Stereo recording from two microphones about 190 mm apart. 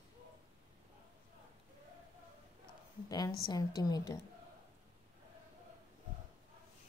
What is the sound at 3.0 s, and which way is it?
A woman's voice, 20° left (ahead or behind).